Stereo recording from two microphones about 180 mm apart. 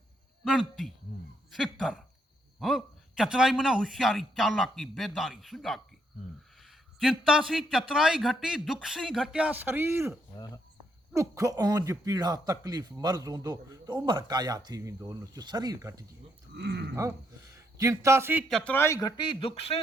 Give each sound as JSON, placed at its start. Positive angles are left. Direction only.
{"t": 0.4, "sound": "a man's voice", "side_deg": 0}
{"t": 10.3, "sound": "a man's voice", "side_deg": 25}
{"t": 11.1, "sound": "speech", "side_deg": -15}
{"t": 16.6, "sound": "a sound", "side_deg": -70}
{"t": 16.9, "sound": "a man's voice", "side_deg": -15}
{"t": 18.4, "sound": "a man's voice", "side_deg": 5}